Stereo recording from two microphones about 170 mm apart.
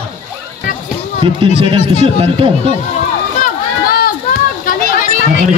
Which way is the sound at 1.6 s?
35° right (ahead or behind).